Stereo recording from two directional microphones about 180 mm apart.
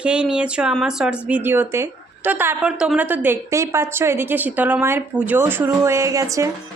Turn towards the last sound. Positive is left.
turn(degrees=-15)  # may be behind; listen again after turning